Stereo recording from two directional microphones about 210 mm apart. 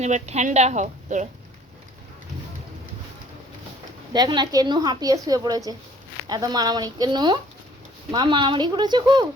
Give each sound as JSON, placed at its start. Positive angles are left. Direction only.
{"t": 0.0, "sound": "a woman's voice", "side_deg": -35}
{"t": 4.1, "sound": "a woman's voice", "side_deg": -20}